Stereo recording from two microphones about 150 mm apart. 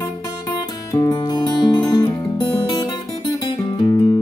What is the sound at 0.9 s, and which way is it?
Music, 25° left (ahead or behind).